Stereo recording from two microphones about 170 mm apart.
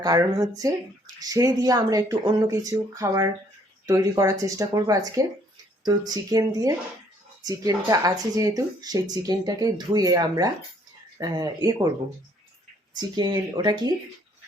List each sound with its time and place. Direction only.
0.0 s speech: 20° right (ahead or behind)
13.0 s speech: 25° right (ahead or behind)